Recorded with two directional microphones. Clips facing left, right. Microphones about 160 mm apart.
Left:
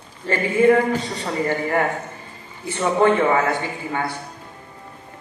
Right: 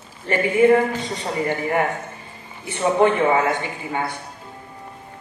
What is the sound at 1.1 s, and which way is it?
A man's voice, 20° right (ahead or behind).